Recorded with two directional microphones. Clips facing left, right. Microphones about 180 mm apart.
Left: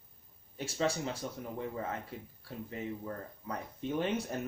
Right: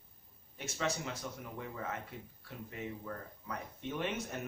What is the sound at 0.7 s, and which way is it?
Speech, 30° left (ahead or behind).